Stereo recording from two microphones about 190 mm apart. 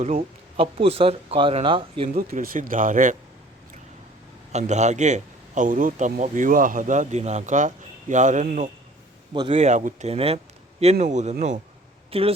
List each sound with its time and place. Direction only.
0.0 s speech: 35° right (ahead or behind)
2.1 s speech: 50° right (ahead or behind)
4.5 s a man's voice: 35° right (ahead or behind)
9.3 s a man's voice: 25° right (ahead or behind)